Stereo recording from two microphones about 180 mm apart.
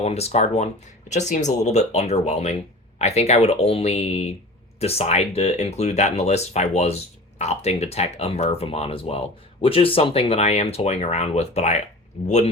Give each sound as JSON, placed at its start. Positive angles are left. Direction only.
{"t": 0.0, "sound": "speech", "side_deg": 35}